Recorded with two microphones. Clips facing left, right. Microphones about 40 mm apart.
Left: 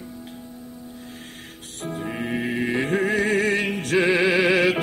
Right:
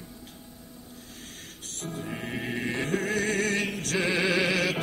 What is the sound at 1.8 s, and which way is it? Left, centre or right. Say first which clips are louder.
Music: left 6 dB; left.